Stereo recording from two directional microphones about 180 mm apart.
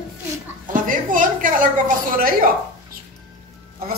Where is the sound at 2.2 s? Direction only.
50° right (ahead or behind).